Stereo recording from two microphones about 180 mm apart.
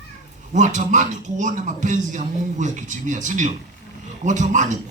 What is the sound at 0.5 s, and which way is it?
A man's voice, 45° right (ahead or behind).